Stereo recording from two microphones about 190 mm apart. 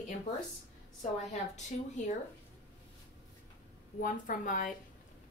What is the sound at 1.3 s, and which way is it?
Speech, 40° left (ahead or behind).